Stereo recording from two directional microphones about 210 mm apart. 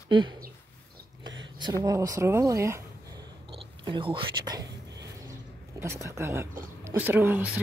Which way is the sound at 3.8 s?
25° right (ahead or behind).